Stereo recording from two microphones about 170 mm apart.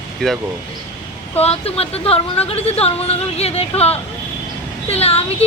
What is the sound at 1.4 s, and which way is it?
Speech, 35° left (ahead or behind).